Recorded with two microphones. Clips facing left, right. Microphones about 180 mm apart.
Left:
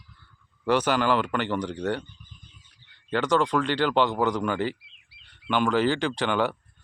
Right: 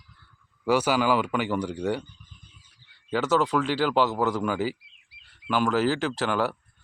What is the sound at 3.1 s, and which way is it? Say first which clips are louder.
Speech: even; 5° right (ahead or behind).